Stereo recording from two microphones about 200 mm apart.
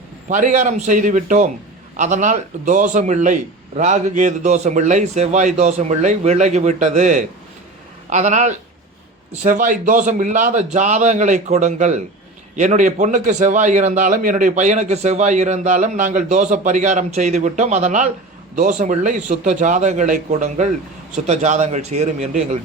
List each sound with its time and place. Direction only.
0.3 s a man's voice: 40° right (ahead or behind)